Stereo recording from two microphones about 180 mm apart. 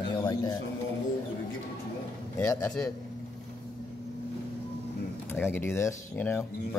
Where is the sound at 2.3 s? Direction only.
15° left (ahead or behind).